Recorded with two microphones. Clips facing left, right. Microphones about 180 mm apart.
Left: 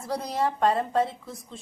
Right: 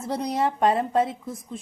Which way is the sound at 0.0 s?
20° right (ahead or behind).